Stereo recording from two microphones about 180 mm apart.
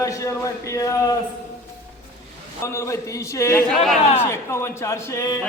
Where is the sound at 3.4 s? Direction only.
15° left (ahead or behind).